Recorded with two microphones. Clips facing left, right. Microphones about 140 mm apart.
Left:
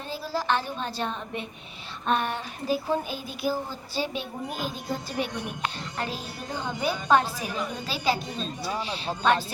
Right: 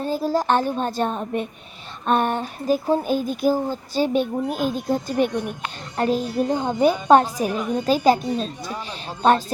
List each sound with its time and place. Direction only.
0.0 s a child's voice: 45° right (ahead or behind)
4.4 s speech: centre (ahead or behind)
4.9 s a child's voice: 45° right (ahead or behind)